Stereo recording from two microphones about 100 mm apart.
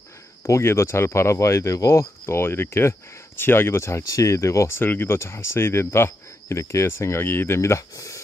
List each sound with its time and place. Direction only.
0.5 s speech: 25° left (ahead or behind)